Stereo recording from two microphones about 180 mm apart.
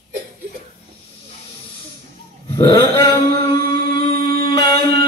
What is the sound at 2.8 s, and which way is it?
Music, 15° left (ahead or behind).